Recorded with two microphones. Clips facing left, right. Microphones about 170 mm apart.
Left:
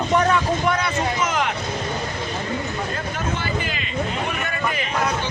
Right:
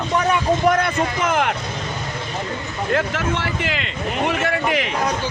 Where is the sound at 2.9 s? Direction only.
90° right.